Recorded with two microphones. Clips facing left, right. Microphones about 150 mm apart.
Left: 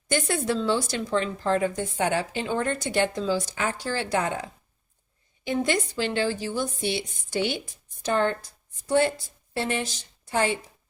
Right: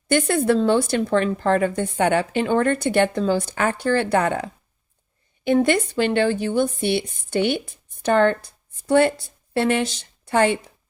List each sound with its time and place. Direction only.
0.1 s speech: 60° right (ahead or behind)
5.5 s speech: 60° right (ahead or behind)